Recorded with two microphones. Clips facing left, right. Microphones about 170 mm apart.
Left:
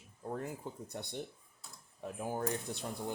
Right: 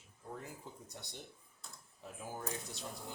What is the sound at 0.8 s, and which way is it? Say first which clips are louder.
Speech: left 9 dB; 55° left (ahead or behind).